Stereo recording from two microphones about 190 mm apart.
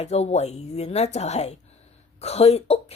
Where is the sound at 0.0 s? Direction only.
35° left (ahead or behind).